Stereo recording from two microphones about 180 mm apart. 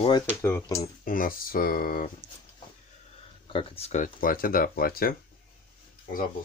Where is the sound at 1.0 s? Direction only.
50° left (ahead or behind).